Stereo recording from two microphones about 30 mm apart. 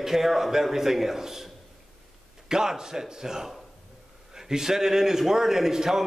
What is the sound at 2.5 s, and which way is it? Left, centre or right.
A man's voice, right.